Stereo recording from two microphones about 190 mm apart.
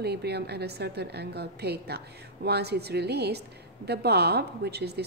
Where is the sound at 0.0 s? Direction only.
60° right (ahead or behind).